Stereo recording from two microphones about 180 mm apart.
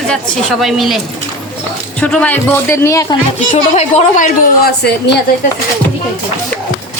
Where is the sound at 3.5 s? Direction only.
40° left (ahead or behind).